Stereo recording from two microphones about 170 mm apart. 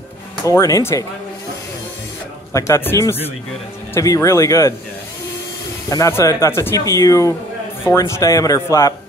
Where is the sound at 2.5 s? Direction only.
15° left (ahead or behind).